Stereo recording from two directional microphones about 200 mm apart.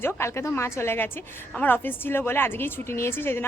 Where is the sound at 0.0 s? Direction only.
15° left (ahead or behind).